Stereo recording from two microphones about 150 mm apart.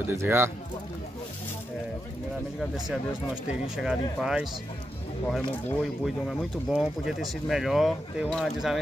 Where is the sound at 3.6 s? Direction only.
5° right (ahead or behind).